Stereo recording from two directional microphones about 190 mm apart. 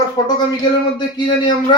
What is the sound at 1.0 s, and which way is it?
Speech, 25° left (ahead or behind).